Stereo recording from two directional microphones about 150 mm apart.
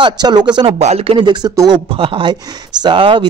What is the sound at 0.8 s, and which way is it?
Speech, 45° right (ahead or behind).